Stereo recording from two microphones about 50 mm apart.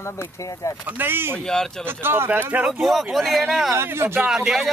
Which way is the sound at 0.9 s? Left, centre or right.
Right.